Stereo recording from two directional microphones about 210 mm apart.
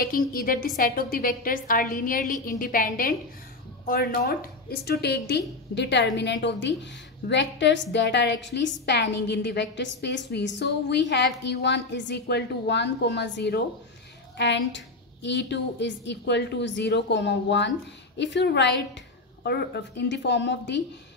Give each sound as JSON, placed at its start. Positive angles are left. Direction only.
{"t": 0.0, "sound": "a woman's voice", "side_deg": 45}